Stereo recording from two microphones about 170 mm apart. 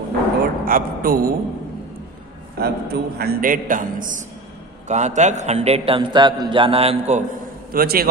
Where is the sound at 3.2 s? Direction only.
60° right (ahead or behind); by 7.3 s 40° right (ahead or behind).